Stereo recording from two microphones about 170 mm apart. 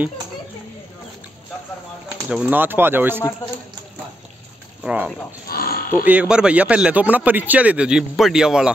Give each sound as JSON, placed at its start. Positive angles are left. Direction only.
{"t": 2.2, "sound": "a man's voice", "side_deg": -5}
{"t": 4.8, "sound": "a man's voice", "side_deg": -10}
{"t": 5.5, "sound": "a sound", "side_deg": 60}
{"t": 6.0, "sound": "a man's voice", "side_deg": -5}